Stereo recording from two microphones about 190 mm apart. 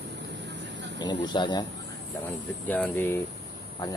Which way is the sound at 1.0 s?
20° left (ahead or behind).